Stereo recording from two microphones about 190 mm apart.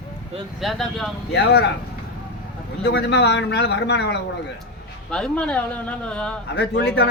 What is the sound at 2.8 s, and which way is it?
A man's voice, 65° left (ahead or behind).